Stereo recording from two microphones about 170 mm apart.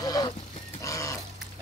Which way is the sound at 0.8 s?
20° left (ahead or behind).